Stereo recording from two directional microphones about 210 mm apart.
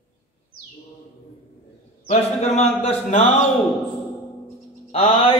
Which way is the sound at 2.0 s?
30° left (ahead or behind).